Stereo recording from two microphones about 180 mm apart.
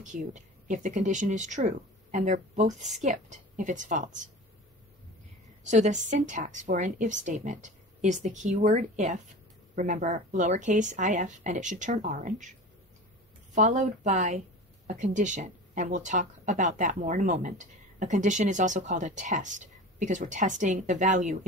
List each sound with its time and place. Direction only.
0.0 s speech: 45° right (ahead or behind)
5.6 s speech: 40° right (ahead or behind)
13.6 s speech: 40° right (ahead or behind)